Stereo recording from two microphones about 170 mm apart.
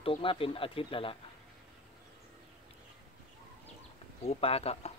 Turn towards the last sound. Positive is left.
turn(degrees=35)  # may be behind; listen again after turning